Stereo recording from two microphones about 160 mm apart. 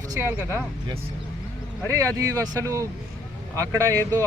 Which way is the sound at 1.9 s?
20° right (ahead or behind).